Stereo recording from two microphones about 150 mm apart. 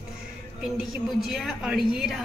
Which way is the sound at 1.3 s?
5° right (ahead or behind).